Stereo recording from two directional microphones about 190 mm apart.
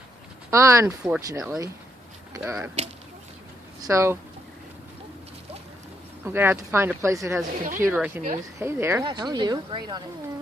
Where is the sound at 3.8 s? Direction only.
15° right (ahead or behind).